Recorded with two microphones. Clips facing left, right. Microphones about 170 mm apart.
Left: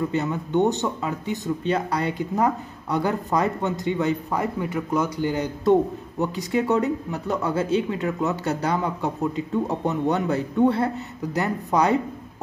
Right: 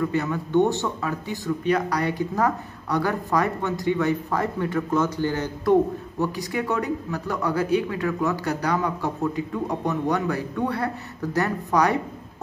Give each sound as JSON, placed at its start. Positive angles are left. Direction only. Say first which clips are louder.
{"t": 0.1, "sound": "speech", "louder": "right 1 dB", "side_deg": 20}